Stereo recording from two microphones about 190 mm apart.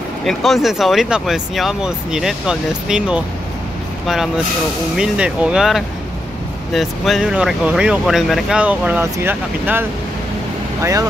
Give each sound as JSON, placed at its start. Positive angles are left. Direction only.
{"t": 0.2, "sound": "speech", "side_deg": 0}
{"t": 4.9, "sound": "speech", "side_deg": -5}